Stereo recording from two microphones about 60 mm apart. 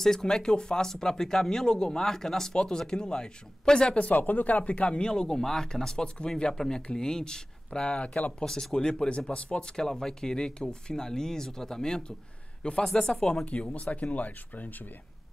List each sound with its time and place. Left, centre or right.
0.0 s speech: centre
8.5 s speech: centre
13.5 s speech: left